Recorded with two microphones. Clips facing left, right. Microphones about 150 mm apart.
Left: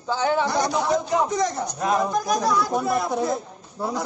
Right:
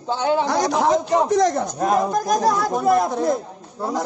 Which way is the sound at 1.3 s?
70° right (ahead or behind).